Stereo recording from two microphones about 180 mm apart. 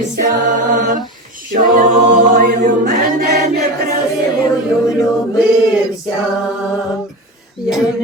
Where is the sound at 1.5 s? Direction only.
45° right (ahead or behind).